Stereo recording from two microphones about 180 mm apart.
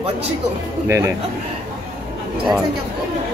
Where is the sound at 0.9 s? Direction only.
15° right (ahead or behind).